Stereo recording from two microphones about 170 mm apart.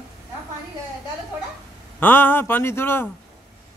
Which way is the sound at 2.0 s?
10° left (ahead or behind).